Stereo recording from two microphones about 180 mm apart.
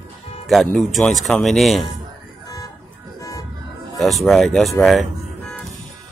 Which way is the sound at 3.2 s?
20° left (ahead or behind).